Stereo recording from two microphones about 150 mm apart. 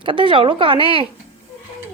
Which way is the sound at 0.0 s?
35° right (ahead or behind).